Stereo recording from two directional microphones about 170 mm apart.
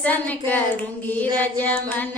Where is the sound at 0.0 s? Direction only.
10° left (ahead or behind).